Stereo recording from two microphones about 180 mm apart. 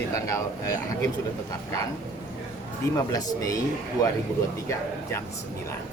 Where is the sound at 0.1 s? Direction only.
15° left (ahead or behind).